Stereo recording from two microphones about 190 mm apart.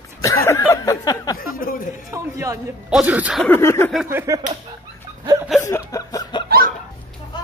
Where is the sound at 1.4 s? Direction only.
50° left (ahead or behind).